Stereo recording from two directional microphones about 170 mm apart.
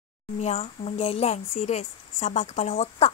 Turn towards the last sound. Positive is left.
turn(degrees=40)  # may be behind; listen again after turning